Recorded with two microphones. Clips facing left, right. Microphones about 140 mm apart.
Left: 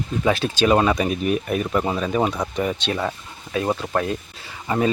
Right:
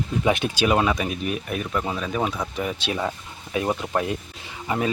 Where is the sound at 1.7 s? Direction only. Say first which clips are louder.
Left 4 dB; 10° left (ahead or behind); by 4.2 s 15° right (ahead or behind).